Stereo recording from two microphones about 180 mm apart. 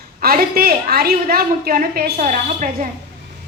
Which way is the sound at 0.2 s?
55° right (ahead or behind).